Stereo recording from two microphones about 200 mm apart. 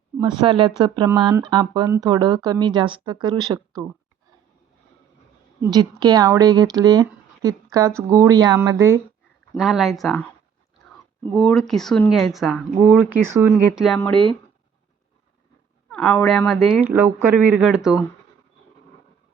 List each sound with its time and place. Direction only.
0.2 s speech: 20° right (ahead or behind)
5.6 s speech: 20° right (ahead or behind)
9.6 s speech: centre (ahead or behind)
15.9 s speech: 5° left (ahead or behind)